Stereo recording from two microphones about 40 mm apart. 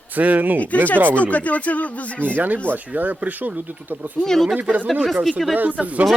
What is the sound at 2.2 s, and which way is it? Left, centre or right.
Speech, right.